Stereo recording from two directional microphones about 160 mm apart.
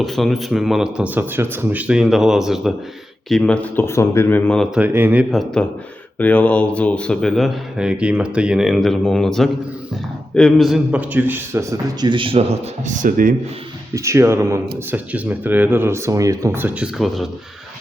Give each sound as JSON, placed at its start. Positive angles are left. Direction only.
{"t": 0.0, "sound": "speech", "side_deg": 0}
{"t": 4.8, "sound": "speech", "side_deg": -10}
{"t": 5.3, "sound": "speech", "side_deg": 0}
{"t": 13.9, "sound": "speech", "side_deg": -20}